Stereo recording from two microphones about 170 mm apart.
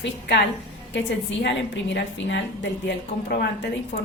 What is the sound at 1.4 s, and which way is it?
A woman's voice, 90° left.